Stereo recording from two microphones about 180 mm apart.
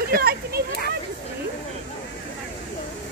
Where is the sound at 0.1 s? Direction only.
60° right (ahead or behind).